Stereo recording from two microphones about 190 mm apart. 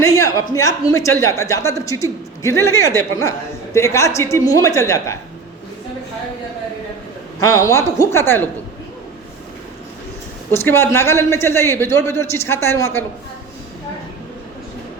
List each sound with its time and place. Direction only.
0.0 s a man's voice: 15° left (ahead or behind)
7.3 s a man's voice: 15° left (ahead or behind)
10.5 s a man's voice: 10° left (ahead or behind)